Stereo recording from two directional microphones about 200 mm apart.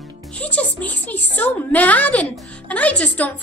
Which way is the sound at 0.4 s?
5° left (ahead or behind).